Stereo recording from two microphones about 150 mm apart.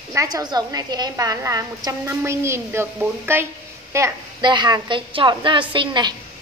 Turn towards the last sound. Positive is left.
turn(degrees=-30)  # may be behind; listen again after turning